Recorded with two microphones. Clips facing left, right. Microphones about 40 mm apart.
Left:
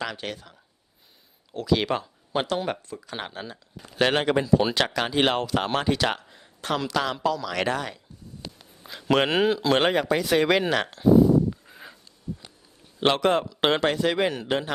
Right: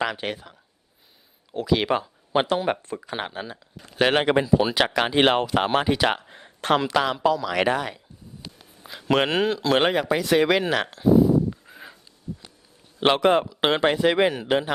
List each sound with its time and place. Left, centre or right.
0.0 s speech: right
1.5 s speech: centre
4.5 s speech: centre
4.9 s speech: right
6.2 s a sound: right
6.7 s speech: right
7.0 s speech: centre
13.0 s speech: centre